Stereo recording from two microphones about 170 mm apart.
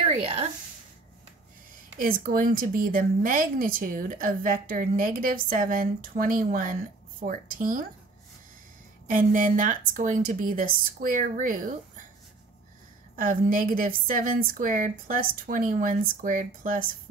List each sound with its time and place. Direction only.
0.0 s a sound: 40° right (ahead or behind)
2.0 s speech: 55° right (ahead or behind)
9.1 s a woman's voice: 50° right (ahead or behind)
13.1 s a woman's voice: 55° right (ahead or behind)